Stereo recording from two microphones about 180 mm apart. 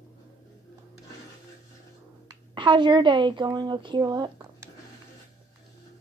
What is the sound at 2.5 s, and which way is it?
A woman's voice, 25° right (ahead or behind).